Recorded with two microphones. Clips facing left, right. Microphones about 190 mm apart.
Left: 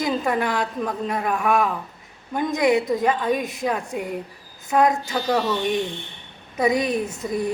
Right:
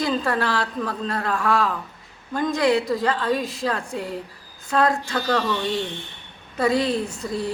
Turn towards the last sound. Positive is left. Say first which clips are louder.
# left 2 dB
turn(degrees=20)  # may be behind; listen again after turning